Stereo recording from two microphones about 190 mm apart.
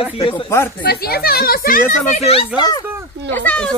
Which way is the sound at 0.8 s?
55° left (ahead or behind).